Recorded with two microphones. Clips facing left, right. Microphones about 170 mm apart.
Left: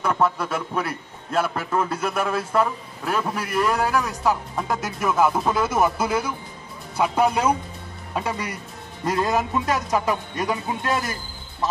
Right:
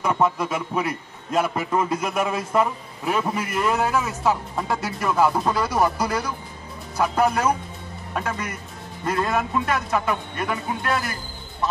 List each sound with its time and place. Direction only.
0.0 s a man's voice: 10° right (ahead or behind); by 11.1 s 20° left (ahead or behind)